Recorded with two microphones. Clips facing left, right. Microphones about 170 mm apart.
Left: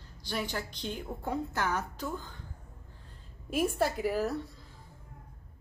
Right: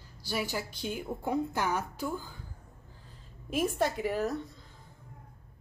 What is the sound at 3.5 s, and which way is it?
Speech, centre (ahead or behind).